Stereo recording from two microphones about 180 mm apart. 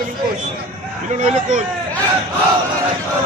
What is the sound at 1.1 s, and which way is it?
Speech, 40° right (ahead or behind).